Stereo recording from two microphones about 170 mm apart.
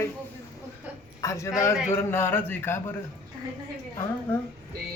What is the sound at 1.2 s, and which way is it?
Speech, 20° left (ahead or behind).